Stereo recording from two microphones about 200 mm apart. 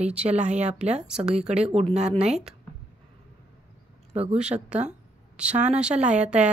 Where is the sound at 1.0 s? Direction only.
5° right (ahead or behind).